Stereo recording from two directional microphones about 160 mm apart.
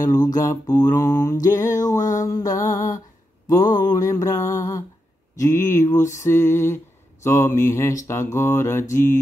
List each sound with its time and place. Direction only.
0.0 s music: 25° left (ahead or behind)
6.1 s mantra: 15° left (ahead or behind)